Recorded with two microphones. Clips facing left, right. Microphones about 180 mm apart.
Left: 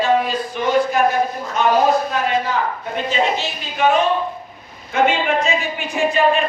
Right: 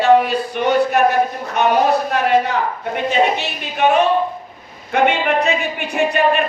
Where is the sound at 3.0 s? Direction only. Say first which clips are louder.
Right 3 dB; 60° right (ahead or behind).